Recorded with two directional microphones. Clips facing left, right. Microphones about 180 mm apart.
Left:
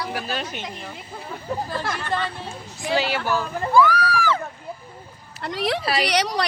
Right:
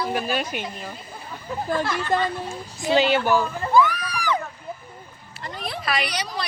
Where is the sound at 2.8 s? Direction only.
20° right (ahead or behind).